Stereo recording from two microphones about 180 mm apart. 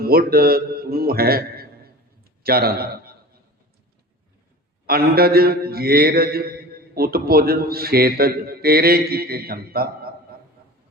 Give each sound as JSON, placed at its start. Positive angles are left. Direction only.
{"t": 0.0, "sound": "a man's voice", "side_deg": -55}
{"t": 4.9, "sound": "a man's voice", "side_deg": -55}